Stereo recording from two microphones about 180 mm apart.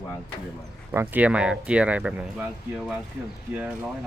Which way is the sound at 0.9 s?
10° right (ahead or behind).